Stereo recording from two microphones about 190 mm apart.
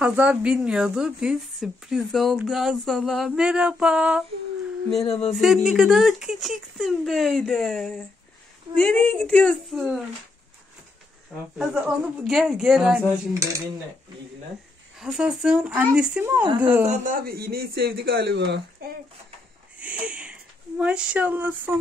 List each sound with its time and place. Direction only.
0.0 s speech: 5° right (ahead or behind)
5.0 s speech: 30° left (ahead or behind)
5.3 s speech: centre (ahead or behind)
11.5 s speech: 5° right (ahead or behind)
13.3 s speech: 15° right (ahead or behind)
15.0 s speech: centre (ahead or behind)
16.8 s a man's voice: 40° right (ahead or behind); by 18.9 s 65° right (ahead or behind)
19.8 s a sound: 5° right (ahead or behind)
20.8 s speech: 5° right (ahead or behind)